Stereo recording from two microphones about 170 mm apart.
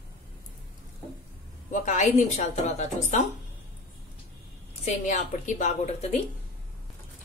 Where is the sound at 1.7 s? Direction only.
45° left (ahead or behind).